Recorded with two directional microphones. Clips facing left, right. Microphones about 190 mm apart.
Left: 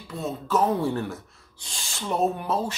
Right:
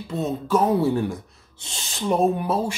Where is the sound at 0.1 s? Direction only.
20° right (ahead or behind).